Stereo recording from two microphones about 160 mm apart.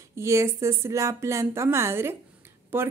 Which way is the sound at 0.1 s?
20° right (ahead or behind).